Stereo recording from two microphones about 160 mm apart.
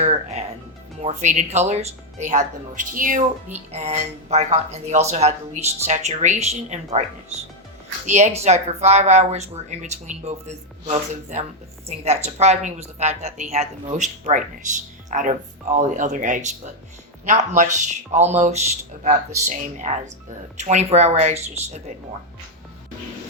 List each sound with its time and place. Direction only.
0.0 s music: 45° right (ahead or behind)
1.0 s speech: 50° right (ahead or behind)
3.7 s speech: 40° right (ahead or behind)